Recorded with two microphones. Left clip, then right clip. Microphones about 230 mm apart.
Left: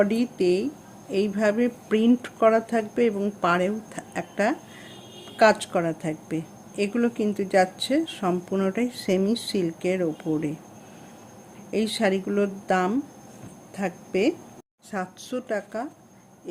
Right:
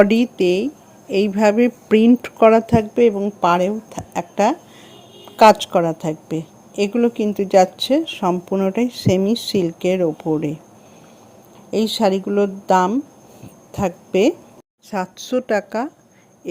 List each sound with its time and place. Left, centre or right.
0.0 s a woman's voice: right
11.7 s a woman's voice: right